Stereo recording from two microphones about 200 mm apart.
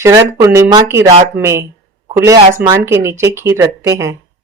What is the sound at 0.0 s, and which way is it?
Speech, 15° right (ahead or behind).